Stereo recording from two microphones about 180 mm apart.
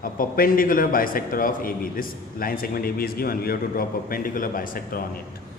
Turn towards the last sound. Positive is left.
turn(degrees=50)  # may be behind; listen again after turning